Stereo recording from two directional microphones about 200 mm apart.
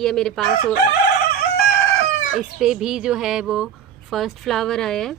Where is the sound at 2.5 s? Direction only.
5° right (ahead or behind).